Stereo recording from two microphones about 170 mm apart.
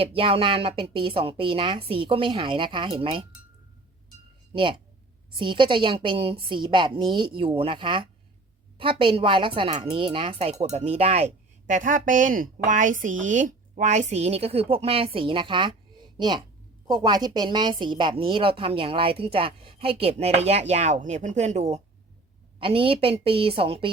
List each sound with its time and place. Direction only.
0.0 s a woman's voice: 30° right (ahead or behind)
4.5 s a woman's voice: 30° right (ahead or behind)
11.6 s a woman's voice: 50° right (ahead or behind); by 23.9 s 35° right (ahead or behind)